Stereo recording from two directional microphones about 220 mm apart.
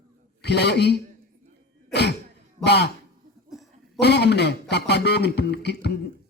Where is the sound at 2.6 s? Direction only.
50° left (ahead or behind).